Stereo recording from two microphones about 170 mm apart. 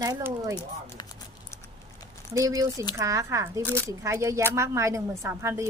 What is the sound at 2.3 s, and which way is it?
A woman's voice, 20° right (ahead or behind).